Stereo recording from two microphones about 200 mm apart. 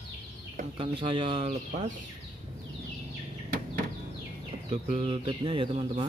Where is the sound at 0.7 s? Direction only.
25° right (ahead or behind).